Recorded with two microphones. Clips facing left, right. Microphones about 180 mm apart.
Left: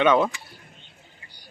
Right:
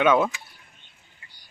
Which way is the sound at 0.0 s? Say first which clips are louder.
Left 1 dB; 5° right (ahead or behind).